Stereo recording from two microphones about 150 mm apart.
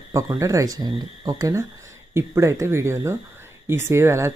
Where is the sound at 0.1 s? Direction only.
20° right (ahead or behind).